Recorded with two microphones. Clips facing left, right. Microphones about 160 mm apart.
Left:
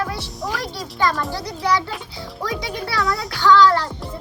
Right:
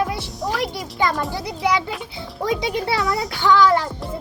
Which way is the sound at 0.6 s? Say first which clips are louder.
Left 2 dB; 20° right (ahead or behind).